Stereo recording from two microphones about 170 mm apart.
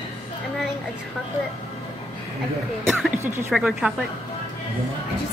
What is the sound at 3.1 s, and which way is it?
Speech, 15° right (ahead or behind).